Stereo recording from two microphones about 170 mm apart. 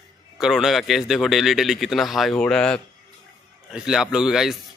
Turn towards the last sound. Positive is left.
turn(degrees=0)  # may be behind; listen again after turning